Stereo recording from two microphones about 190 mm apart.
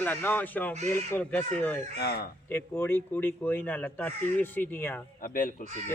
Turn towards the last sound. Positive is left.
turn(degrees=45)  # may be behind; listen again after turning